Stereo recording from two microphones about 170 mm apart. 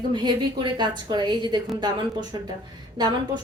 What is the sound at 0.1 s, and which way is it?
A woman's voice, 25° right (ahead or behind).